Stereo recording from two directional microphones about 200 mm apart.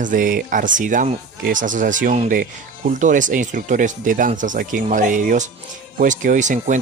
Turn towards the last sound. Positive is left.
turn(degrees=-40)  # may be behind; listen again after turning